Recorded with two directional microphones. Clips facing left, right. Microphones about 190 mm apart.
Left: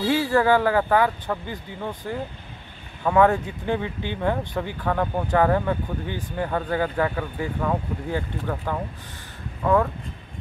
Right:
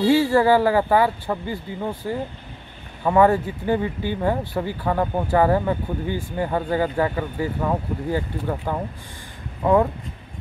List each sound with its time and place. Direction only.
0.0 s speech: 10° right (ahead or behind)